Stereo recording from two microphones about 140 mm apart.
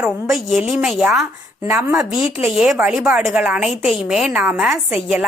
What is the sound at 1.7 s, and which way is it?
Speech, 20° right (ahead or behind).